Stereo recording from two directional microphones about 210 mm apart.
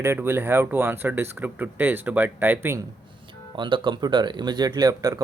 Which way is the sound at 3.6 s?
20° right (ahead or behind).